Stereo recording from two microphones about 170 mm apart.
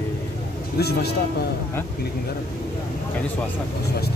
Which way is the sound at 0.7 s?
70° left (ahead or behind).